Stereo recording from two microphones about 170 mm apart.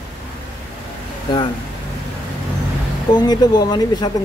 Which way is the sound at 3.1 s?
25° left (ahead or behind).